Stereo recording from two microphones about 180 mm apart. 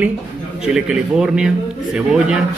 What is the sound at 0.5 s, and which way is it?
A man's voice, 5° right (ahead or behind).